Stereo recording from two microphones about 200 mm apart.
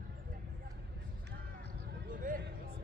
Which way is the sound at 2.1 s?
40° right (ahead or behind).